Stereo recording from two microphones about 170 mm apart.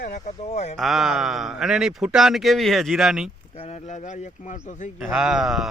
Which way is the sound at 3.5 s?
40° left (ahead or behind).